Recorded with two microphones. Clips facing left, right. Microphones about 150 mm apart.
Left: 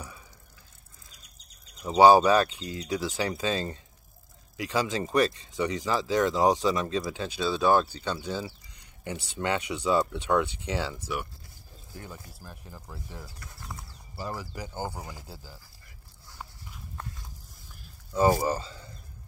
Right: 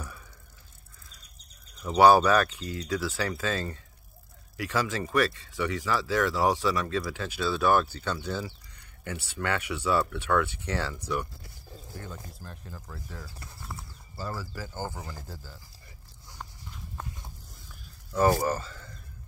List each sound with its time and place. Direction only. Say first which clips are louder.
1.8 s speech: left 1 dB; 20° left (ahead or behind)
13.6 s a sound: even; centre (ahead or behind)
14.1 s speech: even; 15° left (ahead or behind)
16.3 s walk: right 1 dB; 5° left (ahead or behind)
18.1 s speech: left 1 dB; 15° left (ahead or behind)